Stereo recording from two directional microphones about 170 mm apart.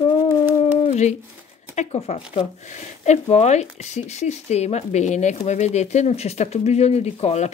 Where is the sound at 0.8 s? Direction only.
40° left (ahead or behind).